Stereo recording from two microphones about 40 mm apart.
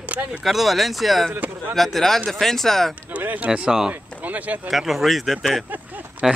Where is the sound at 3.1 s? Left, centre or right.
Right.